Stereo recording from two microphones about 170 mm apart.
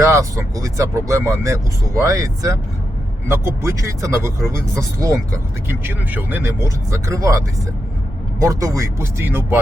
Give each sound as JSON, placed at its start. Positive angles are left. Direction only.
{"t": 0.0, "sound": "speech", "side_deg": -15}